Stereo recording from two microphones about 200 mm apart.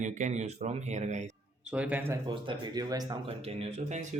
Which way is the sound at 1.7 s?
5° right (ahead or behind).